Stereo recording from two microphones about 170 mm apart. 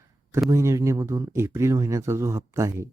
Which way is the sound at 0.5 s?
15° right (ahead or behind).